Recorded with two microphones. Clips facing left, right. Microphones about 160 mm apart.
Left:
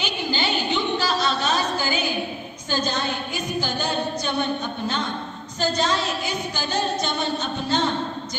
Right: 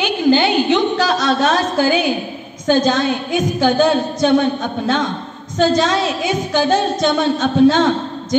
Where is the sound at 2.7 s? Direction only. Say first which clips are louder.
Right 11 dB; 90° right.